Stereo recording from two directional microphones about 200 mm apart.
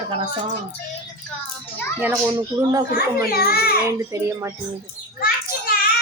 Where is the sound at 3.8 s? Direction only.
15° right (ahead or behind).